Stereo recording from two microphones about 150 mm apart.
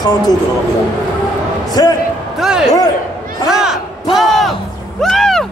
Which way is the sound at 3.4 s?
5° right (ahead or behind).